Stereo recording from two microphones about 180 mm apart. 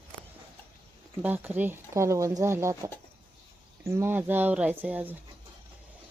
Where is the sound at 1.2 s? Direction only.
10° right (ahead or behind).